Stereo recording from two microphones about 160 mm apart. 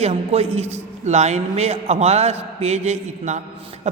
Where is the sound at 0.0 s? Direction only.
40° right (ahead or behind).